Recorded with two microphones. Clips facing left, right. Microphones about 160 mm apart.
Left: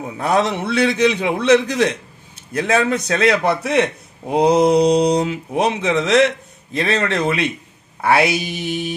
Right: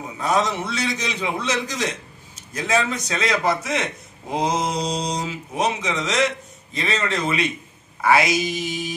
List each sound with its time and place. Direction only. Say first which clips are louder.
0.2 s a man's voice: left 4 dB; 60° left (ahead or behind)
4.3 s mantra: left 8 dB; 30° left (ahead or behind)
4.7 s a man's voice: left 11 dB; 60° left (ahead or behind)